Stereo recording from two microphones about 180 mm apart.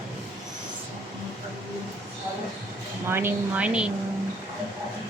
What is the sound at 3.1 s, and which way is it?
Speech, 10° right (ahead or behind).